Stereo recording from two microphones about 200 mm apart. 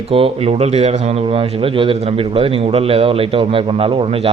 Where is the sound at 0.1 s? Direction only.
30° right (ahead or behind).